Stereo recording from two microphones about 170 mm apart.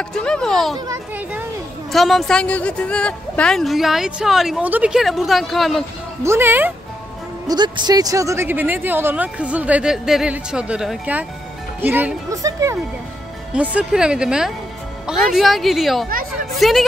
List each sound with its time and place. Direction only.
0.1 s a woman's voice: 5° left (ahead or behind)
0.7 s speech: 20° right (ahead or behind)
1.9 s a woman's voice: centre (ahead or behind)
6.2 s speech: 15° right (ahead or behind)
7.4 s speech: 25° right (ahead or behind)
13.5 s a woman's voice: 5° right (ahead or behind)